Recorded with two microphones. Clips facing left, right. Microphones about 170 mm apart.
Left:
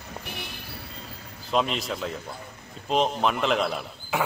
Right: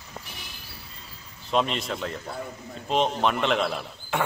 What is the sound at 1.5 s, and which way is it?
A man's voice, centre (ahead or behind).